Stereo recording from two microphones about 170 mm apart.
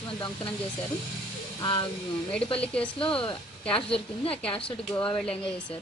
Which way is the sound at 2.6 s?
5° left (ahead or behind).